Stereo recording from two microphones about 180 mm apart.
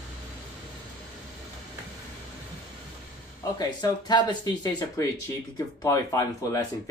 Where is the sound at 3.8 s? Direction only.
25° left (ahead or behind).